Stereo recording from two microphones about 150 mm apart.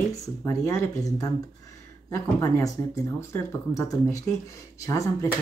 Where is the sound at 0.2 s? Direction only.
20° left (ahead or behind).